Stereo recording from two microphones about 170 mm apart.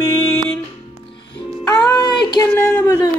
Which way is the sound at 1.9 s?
25° left (ahead or behind).